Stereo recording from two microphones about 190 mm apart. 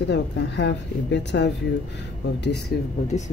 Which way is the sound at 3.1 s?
35° left (ahead or behind).